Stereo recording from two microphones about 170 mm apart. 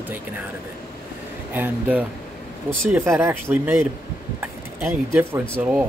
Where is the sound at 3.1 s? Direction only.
15° right (ahead or behind).